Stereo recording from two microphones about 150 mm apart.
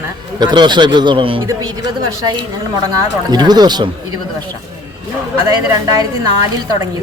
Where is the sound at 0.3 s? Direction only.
30° right (ahead or behind).